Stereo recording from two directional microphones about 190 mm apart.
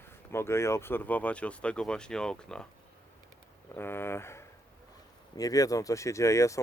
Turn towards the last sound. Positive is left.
turn(degrees=15)  # may be behind; listen again after turning